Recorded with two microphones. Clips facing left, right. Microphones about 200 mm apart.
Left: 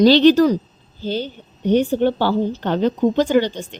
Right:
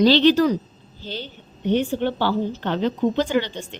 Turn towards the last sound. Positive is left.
turn(degrees=45)  # may be behind; listen again after turning